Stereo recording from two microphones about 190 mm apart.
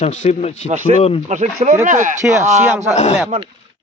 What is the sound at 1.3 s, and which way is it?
Speech, 40° right (ahead or behind).